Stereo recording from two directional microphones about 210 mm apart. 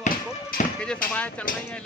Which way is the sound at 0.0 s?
40° left (ahead or behind).